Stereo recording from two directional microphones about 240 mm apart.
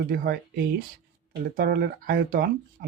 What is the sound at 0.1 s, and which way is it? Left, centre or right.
Speech, right.